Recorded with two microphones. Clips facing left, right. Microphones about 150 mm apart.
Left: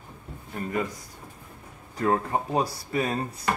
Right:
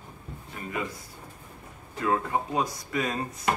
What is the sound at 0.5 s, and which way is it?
Speech, 45° left (ahead or behind).